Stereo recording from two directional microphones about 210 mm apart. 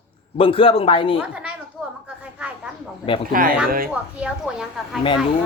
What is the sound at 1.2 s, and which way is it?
Speech, 5° right (ahead or behind).